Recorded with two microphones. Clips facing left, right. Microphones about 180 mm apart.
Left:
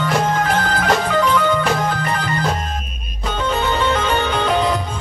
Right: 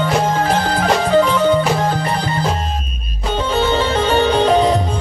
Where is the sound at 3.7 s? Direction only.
35° right (ahead or behind).